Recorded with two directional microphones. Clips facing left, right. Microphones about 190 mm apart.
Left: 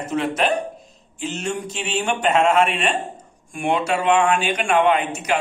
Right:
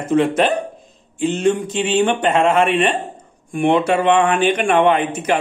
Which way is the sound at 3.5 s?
55° right (ahead or behind).